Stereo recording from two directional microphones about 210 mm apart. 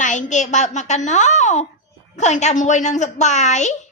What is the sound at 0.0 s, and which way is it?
A woman's voice, 35° left (ahead or behind).